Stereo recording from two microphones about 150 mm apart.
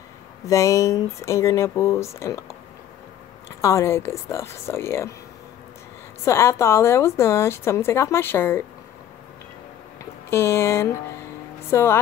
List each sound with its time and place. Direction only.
0.5 s speech: 20° left (ahead or behind)
3.4 s a woman's voice: 20° left (ahead or behind)
6.2 s a woman's voice: 15° left (ahead or behind)
10.3 s a woman's voice: 15° left (ahead or behind)